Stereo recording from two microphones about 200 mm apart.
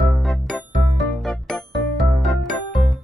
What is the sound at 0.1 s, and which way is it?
Music, centre (ahead or behind).